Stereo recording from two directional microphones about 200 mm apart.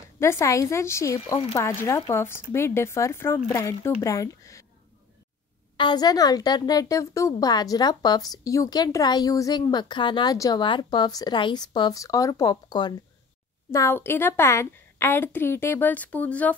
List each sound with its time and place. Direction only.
0.2 s speech: 15° left (ahead or behind)
5.8 s a woman's voice: 20° left (ahead or behind)